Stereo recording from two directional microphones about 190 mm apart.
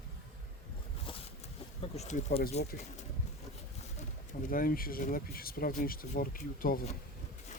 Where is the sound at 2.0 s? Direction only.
35° left (ahead or behind).